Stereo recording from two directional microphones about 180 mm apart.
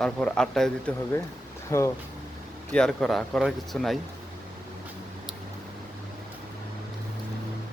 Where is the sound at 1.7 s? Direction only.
15° left (ahead or behind).